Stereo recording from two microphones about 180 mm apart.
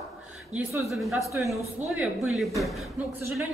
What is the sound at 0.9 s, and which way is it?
A woman's voice, centre (ahead or behind).